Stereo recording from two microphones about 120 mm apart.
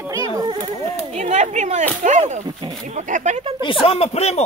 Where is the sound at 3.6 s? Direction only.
45° left (ahead or behind); by 4.4 s 65° left (ahead or behind).